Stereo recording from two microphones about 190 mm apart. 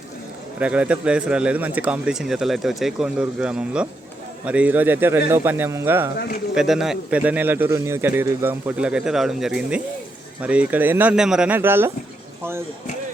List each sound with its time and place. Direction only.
0.6 s a man's voice: 5° right (ahead or behind)
6.1 s speech: 50° left (ahead or behind)
6.5 s a man's voice: centre (ahead or behind)